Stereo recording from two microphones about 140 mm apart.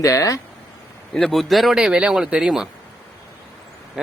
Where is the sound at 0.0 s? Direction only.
25° left (ahead or behind).